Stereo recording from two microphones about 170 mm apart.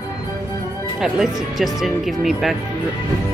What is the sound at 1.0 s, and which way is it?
Speech, centre (ahead or behind).